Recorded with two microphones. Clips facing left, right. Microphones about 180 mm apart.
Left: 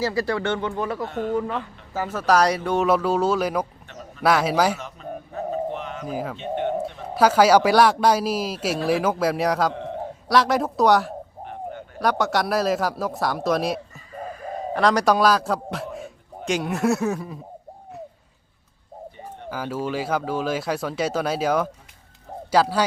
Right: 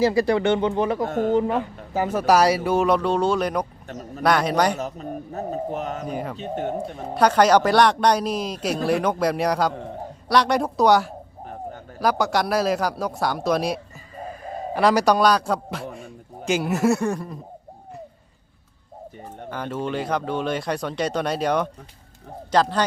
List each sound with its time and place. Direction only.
0.0 s speech: 15° right (ahead or behind)
1.0 s speech: 45° right (ahead or behind)
1.9 s speech: 15° right (ahead or behind); by 3.7 s 5° left (ahead or behind)
3.8 s a sound: 40° right (ahead or behind)
4.2 s speech: 5° left (ahead or behind)
4.8 s speech: 40° right (ahead or behind)
6.1 s speech: centre (ahead or behind)
6.3 s speech: 40° right (ahead or behind)
7.1 s speech: 5° left (ahead or behind)
19.5 s a man's voice: 5° left (ahead or behind)